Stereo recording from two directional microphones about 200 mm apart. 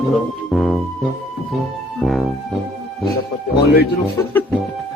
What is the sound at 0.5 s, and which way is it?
Speech, centre (ahead or behind).